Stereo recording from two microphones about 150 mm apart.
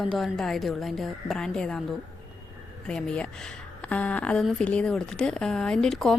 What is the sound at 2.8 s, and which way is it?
Speech, 5° left (ahead or behind).